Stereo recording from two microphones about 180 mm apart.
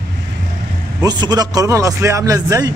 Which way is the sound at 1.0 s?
25° right (ahead or behind).